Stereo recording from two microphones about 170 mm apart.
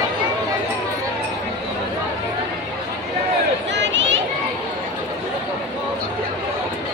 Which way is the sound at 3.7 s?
90° right.